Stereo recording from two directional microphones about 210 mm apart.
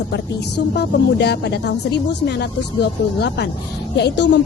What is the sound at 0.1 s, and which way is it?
A woman's voice, 50° left (ahead or behind).